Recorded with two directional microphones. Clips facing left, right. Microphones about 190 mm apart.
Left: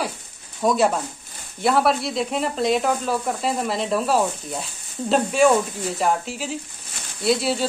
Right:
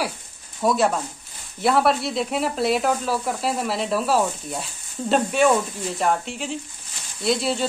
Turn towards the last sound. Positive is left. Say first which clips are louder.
# left 1 dB
turn(degrees=0)  # may be behind; listen again after turning